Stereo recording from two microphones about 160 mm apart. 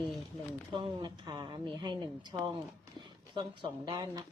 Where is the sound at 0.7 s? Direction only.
30° right (ahead or behind).